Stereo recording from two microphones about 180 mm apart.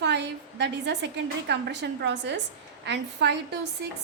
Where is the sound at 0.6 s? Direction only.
70° right (ahead or behind).